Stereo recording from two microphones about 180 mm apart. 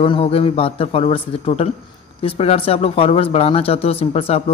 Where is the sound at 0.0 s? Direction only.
30° left (ahead or behind).